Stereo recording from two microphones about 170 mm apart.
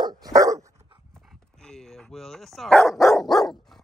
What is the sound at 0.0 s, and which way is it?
Dog, 20° right (ahead or behind).